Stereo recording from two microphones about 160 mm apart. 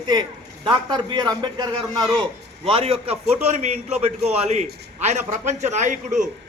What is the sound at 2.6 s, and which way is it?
A man's voice, 35° right (ahead or behind).